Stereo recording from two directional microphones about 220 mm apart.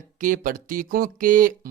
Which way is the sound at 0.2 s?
35° right (ahead or behind).